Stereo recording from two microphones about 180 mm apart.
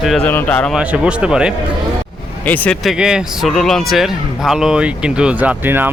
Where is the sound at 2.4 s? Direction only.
10° left (ahead or behind).